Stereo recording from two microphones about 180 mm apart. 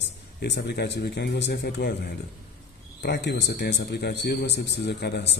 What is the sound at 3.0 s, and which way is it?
A man's voice, 65° left (ahead or behind).